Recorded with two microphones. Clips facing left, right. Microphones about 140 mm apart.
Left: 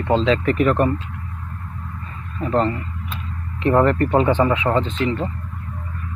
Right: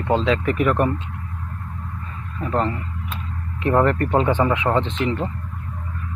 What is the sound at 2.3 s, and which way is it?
Speech, 5° right (ahead or behind).